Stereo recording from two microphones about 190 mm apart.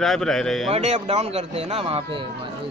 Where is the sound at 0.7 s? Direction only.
35° right (ahead or behind).